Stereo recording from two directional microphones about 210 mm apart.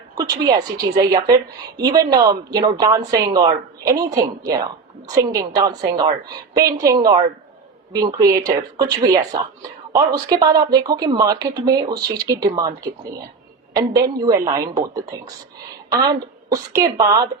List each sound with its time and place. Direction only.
0.2 s a woman's voice: 15° right (ahead or behind)
15.9 s speech: 15° right (ahead or behind)